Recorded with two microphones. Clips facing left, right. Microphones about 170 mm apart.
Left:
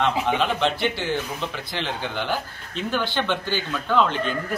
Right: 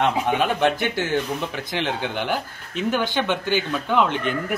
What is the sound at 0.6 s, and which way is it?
Speech, 50° right (ahead or behind).